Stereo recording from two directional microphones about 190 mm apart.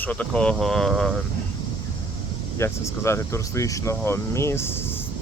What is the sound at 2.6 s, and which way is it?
Speech, 15° left (ahead or behind).